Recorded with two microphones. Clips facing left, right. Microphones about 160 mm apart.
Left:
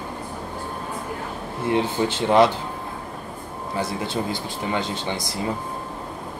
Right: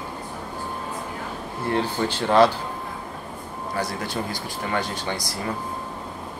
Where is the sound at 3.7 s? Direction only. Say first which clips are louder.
Left 2 dB; 25° left (ahead or behind).